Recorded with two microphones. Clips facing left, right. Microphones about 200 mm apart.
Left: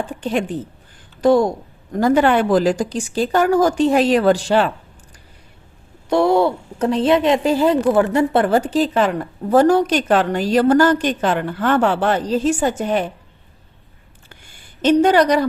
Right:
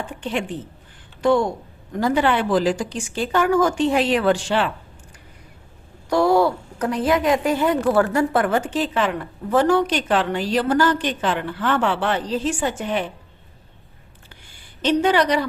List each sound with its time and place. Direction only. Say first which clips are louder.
0.1 s a woman's voice: left 5 dB; 40° left (ahead or behind)
6.1 s a woman's voice: left 2 dB; 25° left (ahead or behind); by 13.1 s 45° left (ahead or behind)
14.3 s a sound: left 3 dB; 45° left (ahead or behind)